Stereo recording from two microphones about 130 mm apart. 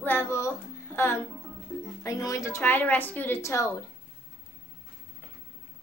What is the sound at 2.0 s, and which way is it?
Speech, 25° left (ahead or behind).